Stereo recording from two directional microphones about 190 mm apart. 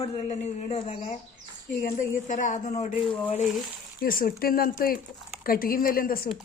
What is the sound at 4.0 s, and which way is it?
A man's voice, 50° left (ahead or behind).